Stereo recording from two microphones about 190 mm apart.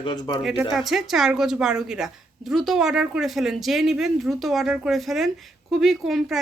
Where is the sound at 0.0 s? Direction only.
25° left (ahead or behind).